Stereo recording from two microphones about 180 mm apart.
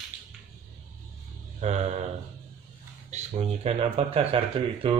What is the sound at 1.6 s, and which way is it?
Speech, 35° right (ahead or behind).